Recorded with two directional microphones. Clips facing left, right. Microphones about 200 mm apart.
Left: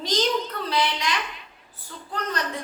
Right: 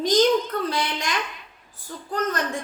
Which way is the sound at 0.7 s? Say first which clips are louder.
Left 2 dB; 50° right (ahead or behind).